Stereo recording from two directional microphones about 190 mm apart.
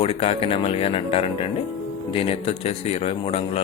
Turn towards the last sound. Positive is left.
turn(degrees=30)  # may be behind; listen again after turning